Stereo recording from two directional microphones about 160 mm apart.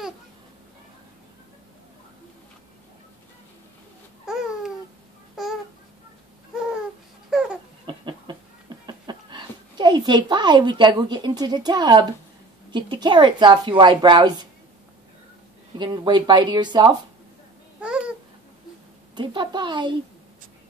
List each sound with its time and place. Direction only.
4.3 s babbling: 5° right (ahead or behind)
7.2 s a sound: 5° right (ahead or behind)
7.8 s a sound: 30° right (ahead or behind)
12.7 s a woman's voice: 30° right (ahead or behind)
15.8 s a woman's voice: 25° right (ahead or behind)
17.7 s babbling: 5° right (ahead or behind)
19.1 s a woman's voice: 30° right (ahead or behind)